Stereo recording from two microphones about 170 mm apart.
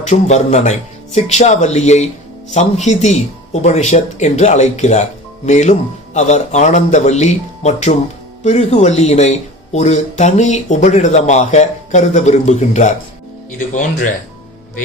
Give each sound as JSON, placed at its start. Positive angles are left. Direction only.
{"t": 0.0, "sound": "speech", "side_deg": 45}